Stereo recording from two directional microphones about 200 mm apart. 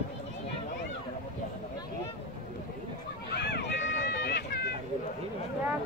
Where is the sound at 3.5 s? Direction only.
60° left (ahead or behind).